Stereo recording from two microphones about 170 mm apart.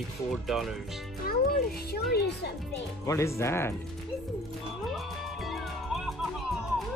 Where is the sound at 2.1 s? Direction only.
70° left (ahead or behind).